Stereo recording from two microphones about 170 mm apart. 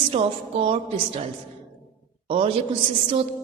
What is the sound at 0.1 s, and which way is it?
A woman's voice, 30° right (ahead or behind).